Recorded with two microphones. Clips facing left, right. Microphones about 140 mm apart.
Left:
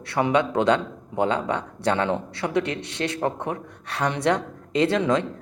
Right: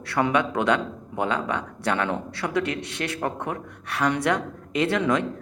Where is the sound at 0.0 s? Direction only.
25° left (ahead or behind).